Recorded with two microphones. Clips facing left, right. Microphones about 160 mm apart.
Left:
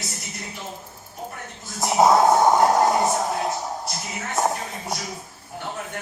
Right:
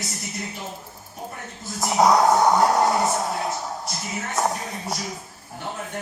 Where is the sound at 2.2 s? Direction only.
20° left (ahead or behind).